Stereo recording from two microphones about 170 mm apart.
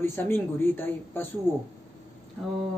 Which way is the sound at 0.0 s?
15° left (ahead or behind).